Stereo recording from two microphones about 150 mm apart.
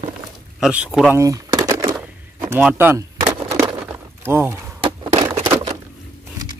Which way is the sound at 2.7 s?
15° right (ahead or behind).